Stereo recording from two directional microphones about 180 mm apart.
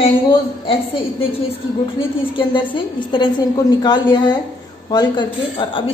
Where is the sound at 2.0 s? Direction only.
25° left (ahead or behind).